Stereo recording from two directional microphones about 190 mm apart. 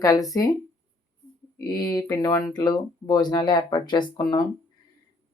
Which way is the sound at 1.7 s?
20° left (ahead or behind).